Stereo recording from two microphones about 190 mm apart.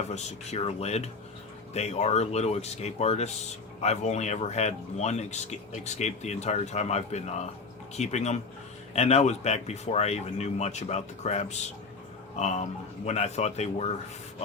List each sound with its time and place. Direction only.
0.1 s speech: 35° left (ahead or behind)